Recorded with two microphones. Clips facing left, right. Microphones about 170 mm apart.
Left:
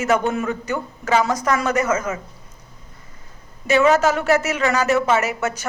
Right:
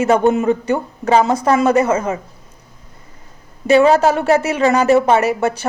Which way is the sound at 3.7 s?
30° right (ahead or behind).